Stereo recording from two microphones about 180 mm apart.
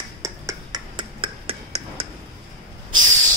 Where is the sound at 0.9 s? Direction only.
30° right (ahead or behind).